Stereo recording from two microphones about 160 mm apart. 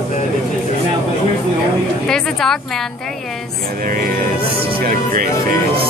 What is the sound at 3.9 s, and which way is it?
Speech, 65° right (ahead or behind).